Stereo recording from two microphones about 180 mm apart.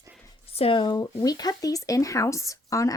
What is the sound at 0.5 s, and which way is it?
Speech, 30° left (ahead or behind).